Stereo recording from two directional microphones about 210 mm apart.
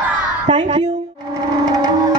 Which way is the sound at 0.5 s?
25° right (ahead or behind).